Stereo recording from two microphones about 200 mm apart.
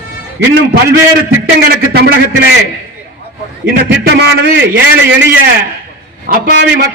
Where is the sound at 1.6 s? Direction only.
50° right (ahead or behind).